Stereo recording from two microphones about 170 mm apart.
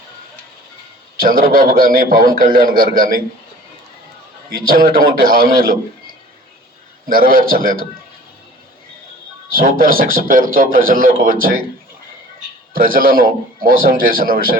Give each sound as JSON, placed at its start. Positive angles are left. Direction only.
{"t": 1.2, "sound": "a man's voice", "side_deg": -55}
{"t": 4.4, "sound": "a man's voice", "side_deg": -60}
{"t": 7.1, "sound": "a man's voice", "side_deg": -55}
{"t": 9.5, "sound": "a man's voice", "side_deg": -60}
{"t": 12.7, "sound": "a man's voice", "side_deg": -55}